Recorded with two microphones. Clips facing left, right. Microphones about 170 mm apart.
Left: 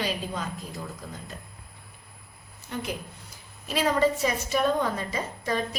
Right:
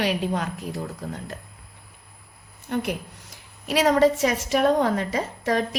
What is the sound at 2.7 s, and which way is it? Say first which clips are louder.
A woman's voice: right 6 dB; 65° right (ahead or behind).